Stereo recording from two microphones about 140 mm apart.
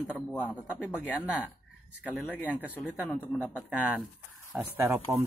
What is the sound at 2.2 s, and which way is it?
Speech, 10° left (ahead or behind).